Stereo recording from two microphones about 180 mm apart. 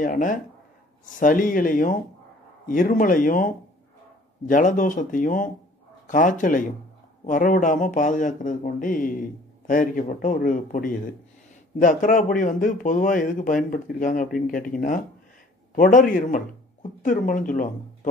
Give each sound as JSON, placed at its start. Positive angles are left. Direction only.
{"t": 0.0, "sound": "speech", "side_deg": 45}